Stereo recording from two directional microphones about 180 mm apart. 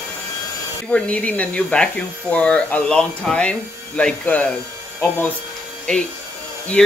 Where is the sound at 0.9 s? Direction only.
5° left (ahead or behind).